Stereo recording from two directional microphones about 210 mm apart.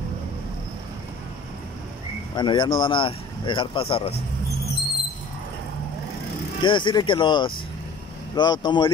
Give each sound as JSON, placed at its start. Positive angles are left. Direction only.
{"t": 2.3, "sound": "speech", "side_deg": 20}
{"t": 6.6, "sound": "speech", "side_deg": 20}